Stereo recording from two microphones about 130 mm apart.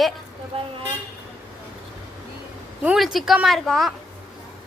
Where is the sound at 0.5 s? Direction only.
50° right (ahead or behind).